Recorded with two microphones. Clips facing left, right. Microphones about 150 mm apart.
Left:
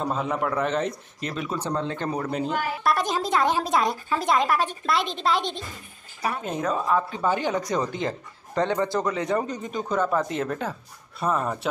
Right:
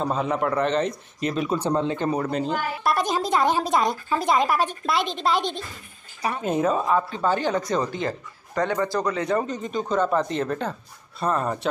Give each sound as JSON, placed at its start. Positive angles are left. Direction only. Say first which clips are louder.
{"t": 0.1, "sound": "speech", "louder": "right 2 dB", "side_deg": 0}
{"t": 1.2, "sound": "speech", "louder": "right 5 dB", "side_deg": -20}
{"t": 7.1, "sound": "speech", "louder": "right 1 dB", "side_deg": 15}